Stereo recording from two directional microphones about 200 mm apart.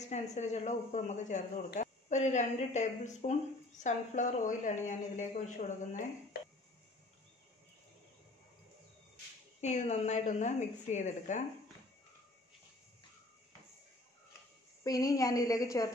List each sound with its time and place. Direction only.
0.0 s a woman's voice: 35° left (ahead or behind)
9.6 s a woman's voice: 35° left (ahead or behind)
14.8 s a woman's voice: 15° left (ahead or behind)